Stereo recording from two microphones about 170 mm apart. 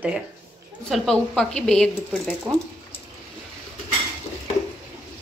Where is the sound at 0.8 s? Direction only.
Centre (ahead or behind).